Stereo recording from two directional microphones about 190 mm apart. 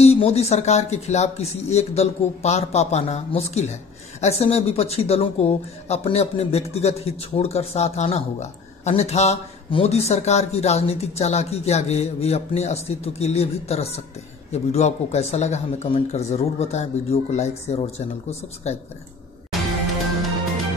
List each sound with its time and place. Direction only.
0.0 s speech: 35° left (ahead or behind)